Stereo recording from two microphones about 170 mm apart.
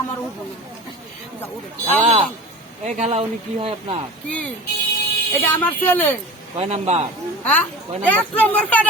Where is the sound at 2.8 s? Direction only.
40° right (ahead or behind).